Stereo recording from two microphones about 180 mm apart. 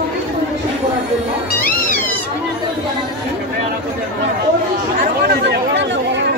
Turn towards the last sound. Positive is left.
turn(degrees=-70)  # may be behind; listen again after turning